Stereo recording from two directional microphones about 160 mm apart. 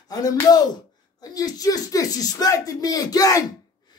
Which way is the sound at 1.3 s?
25° left (ahead or behind).